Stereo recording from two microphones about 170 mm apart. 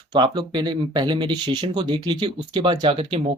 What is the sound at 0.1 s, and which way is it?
Speech, 25° right (ahead or behind).